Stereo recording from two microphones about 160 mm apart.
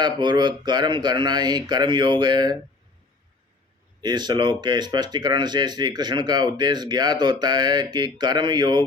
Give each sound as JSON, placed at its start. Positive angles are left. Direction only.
{"t": 0.0, "sound": "speech", "side_deg": -25}
{"t": 4.0, "sound": "speech", "side_deg": -25}